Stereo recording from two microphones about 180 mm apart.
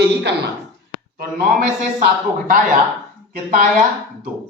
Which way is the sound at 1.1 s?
50° right (ahead or behind).